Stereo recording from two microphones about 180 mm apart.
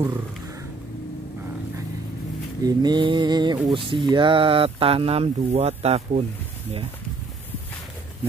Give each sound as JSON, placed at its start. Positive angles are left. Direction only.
{"t": 2.6, "sound": "speech", "side_deg": -25}